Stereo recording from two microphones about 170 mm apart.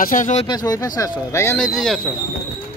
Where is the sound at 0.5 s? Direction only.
25° left (ahead or behind).